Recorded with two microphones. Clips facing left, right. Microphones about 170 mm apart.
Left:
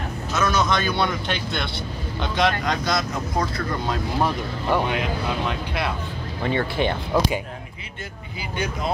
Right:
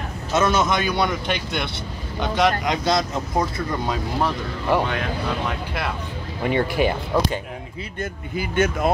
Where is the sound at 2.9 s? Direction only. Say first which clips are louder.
Right 3 dB; 25° right (ahead or behind).